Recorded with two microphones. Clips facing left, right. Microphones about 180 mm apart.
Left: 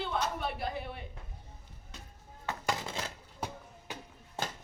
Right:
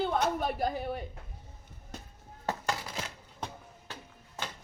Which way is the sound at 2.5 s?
35° right (ahead or behind).